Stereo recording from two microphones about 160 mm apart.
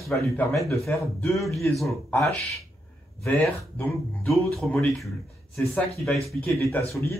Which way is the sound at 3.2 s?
10° left (ahead or behind).